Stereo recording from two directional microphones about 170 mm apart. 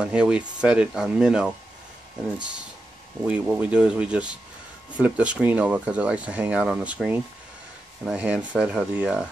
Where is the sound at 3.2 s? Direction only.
10° right (ahead or behind).